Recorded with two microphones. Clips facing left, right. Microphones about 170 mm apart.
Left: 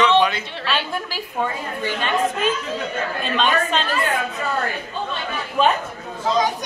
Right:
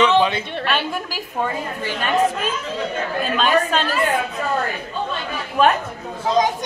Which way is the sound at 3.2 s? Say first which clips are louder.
Right 2 dB; 5° right (ahead or behind).